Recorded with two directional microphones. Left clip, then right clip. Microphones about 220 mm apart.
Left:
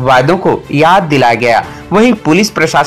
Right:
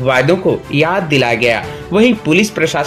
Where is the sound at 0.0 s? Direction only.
15° left (ahead or behind).